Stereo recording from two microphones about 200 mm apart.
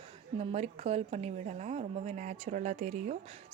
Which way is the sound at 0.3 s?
30° right (ahead or behind).